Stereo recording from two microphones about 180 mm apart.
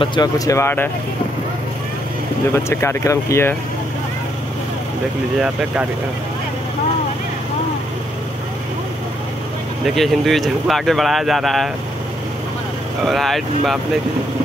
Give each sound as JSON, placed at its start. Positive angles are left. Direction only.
{"t": 0.0, "sound": "speech", "side_deg": 25}
{"t": 2.5, "sound": "speech", "side_deg": 15}
{"t": 9.8, "sound": "speech", "side_deg": 0}
{"t": 13.0, "sound": "speech", "side_deg": 0}